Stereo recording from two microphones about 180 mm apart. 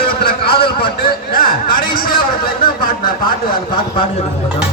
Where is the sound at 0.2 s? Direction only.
60° left (ahead or behind).